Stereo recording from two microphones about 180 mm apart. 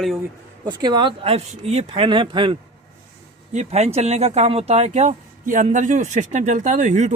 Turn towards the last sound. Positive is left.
turn(degrees=-40)  # may be behind; listen again after turning